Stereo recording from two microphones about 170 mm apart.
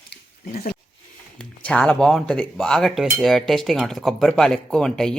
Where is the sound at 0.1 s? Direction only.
65° left (ahead or behind).